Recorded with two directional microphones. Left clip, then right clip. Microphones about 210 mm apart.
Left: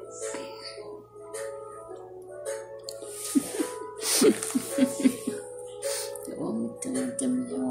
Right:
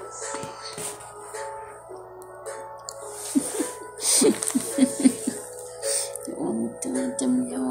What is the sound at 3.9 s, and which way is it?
Music, 10° left (ahead or behind).